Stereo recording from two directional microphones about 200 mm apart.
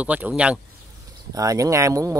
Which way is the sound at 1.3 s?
15° right (ahead or behind).